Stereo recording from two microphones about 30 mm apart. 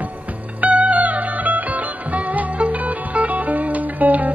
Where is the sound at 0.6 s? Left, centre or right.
Right.